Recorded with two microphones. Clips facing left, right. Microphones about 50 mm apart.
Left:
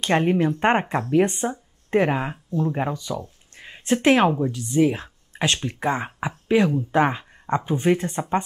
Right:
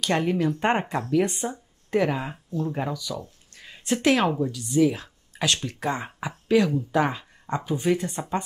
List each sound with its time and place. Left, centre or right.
0.0 s speech: left
3.5 s a sound: left
4.4 s speech: left